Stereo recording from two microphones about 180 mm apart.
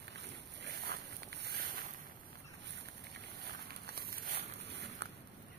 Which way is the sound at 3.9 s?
55° right (ahead or behind).